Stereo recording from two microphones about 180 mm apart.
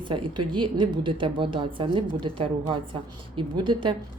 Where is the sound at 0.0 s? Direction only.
25° right (ahead or behind).